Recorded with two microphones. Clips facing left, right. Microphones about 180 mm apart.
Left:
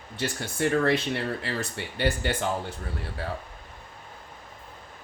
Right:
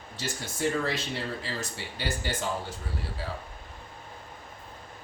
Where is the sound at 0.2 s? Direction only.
60° left (ahead or behind).